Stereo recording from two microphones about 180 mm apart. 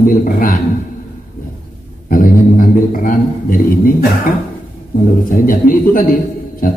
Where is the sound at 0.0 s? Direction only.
50° left (ahead or behind).